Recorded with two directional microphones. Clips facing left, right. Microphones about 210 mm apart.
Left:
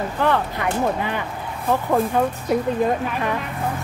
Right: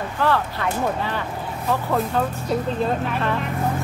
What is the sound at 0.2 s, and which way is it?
Speech, 15° left (ahead or behind).